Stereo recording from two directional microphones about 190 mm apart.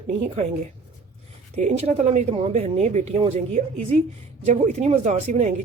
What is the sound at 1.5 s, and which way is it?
Speech, 35° right (ahead or behind).